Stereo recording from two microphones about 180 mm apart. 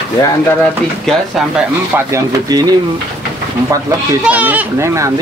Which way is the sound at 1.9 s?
20° right (ahead or behind).